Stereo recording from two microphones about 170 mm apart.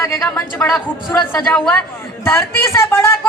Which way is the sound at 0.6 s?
Centre (ahead or behind).